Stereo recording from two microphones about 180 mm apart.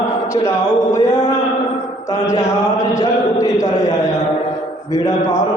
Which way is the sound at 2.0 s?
20° left (ahead or behind).